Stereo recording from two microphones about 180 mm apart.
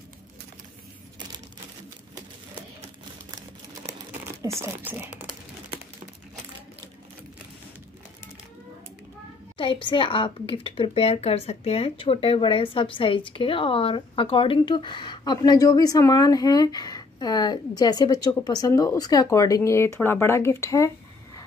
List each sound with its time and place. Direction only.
4.4 s speech: 15° right (ahead or behind)
9.6 s speech: 30° left (ahead or behind)